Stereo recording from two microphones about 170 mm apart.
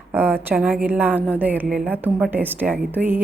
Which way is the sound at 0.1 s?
10° right (ahead or behind).